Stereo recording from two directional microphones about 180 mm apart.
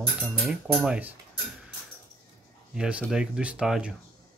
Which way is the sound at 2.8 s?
5° right (ahead or behind).